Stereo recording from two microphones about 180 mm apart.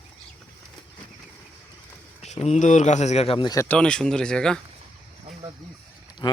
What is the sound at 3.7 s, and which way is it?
Speech, 5° left (ahead or behind).